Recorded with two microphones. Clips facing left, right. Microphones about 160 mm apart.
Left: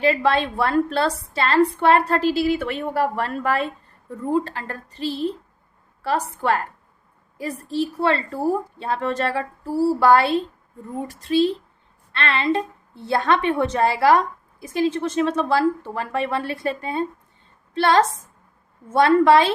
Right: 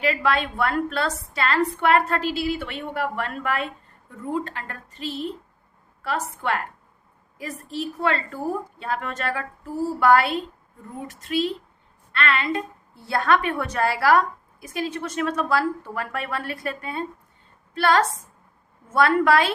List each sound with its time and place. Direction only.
0.0 s a woman's voice: 30° left (ahead or behind)